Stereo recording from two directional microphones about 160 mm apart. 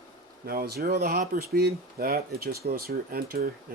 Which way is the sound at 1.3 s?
75° right (ahead or behind).